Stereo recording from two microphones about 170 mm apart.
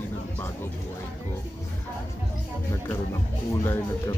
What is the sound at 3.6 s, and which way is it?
Speech, 15° left (ahead or behind).